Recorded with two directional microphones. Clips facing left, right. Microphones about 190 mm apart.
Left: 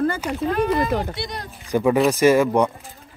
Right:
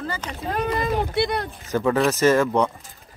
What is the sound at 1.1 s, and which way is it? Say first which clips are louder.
Speech: right 8 dB; 60° right (ahead or behind).